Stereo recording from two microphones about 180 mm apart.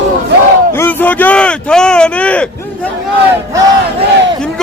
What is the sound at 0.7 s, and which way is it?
Speech, 10° left (ahead or behind).